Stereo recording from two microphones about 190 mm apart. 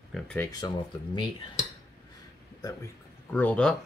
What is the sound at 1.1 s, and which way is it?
Speech, 25° left (ahead or behind).